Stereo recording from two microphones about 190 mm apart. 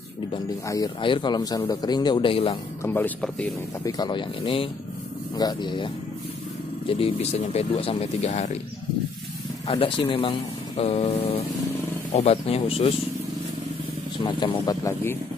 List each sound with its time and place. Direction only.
0.3 s speech: 20° left (ahead or behind)
2.8 s speech: 10° left (ahead or behind)
3.8 s speech: 25° left (ahead or behind)
6.9 s speech: 30° left (ahead or behind)
9.7 s speech: 30° left (ahead or behind)
14.2 s speech: 25° left (ahead or behind)